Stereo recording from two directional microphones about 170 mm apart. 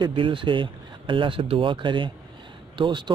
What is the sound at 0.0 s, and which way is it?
A man's voice, 30° right (ahead or behind).